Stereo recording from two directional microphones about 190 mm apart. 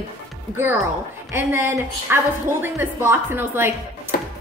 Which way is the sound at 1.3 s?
10° right (ahead or behind).